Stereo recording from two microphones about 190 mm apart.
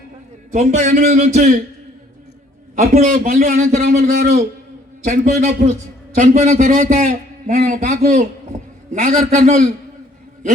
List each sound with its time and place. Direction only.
0.5 s a man's voice: 40° right (ahead or behind)
2.7 s a man's voice: 40° right (ahead or behind)